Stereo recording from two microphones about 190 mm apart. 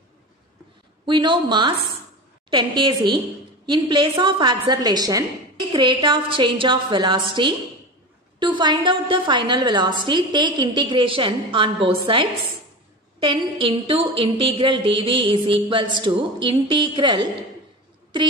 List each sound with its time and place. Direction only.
1.0 s a woman's voice: 25° right (ahead or behind)